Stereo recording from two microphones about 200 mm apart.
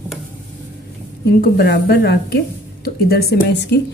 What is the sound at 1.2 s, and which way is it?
A woman's voice, 50° left (ahead or behind).